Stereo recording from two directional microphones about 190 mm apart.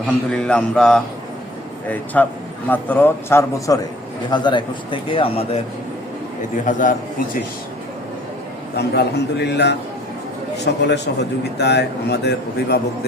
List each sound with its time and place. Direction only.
0.0 s a man's voice: 5° left (ahead or behind)
2.2 s speech: 5° left (ahead or behind)
4.3 s a man's voice: 25° left (ahead or behind)
6.7 s a man's voice: 45° left (ahead or behind)
8.7 s a man's voice: 60° left (ahead or behind)